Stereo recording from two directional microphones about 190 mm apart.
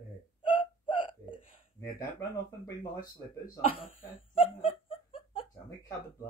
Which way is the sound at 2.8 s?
45° left (ahead or behind).